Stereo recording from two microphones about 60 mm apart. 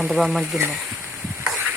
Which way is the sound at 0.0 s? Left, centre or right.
Centre.